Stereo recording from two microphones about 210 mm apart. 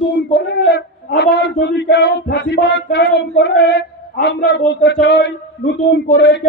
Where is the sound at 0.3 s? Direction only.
50° left (ahead or behind).